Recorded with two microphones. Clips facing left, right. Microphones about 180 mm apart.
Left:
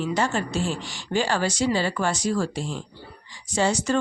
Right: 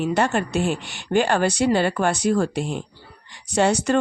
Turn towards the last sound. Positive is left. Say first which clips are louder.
# right 4 dB
turn(degrees=-65)  # may be behind; listen again after turning